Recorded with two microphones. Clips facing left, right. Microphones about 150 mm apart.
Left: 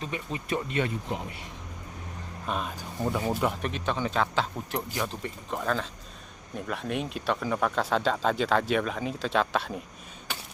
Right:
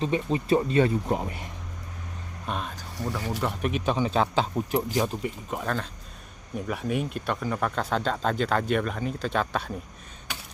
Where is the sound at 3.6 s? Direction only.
10° right (ahead or behind).